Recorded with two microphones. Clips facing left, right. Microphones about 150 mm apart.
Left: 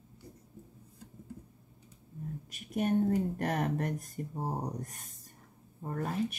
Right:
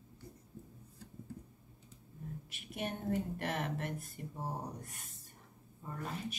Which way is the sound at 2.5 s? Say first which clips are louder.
Left 12 dB; 40° left (ahead or behind).